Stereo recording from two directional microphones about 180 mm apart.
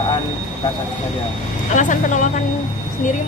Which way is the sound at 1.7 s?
45° left (ahead or behind).